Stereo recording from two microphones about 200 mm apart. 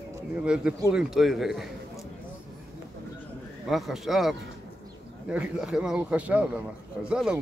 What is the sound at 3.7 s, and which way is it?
A man's voice, centre (ahead or behind).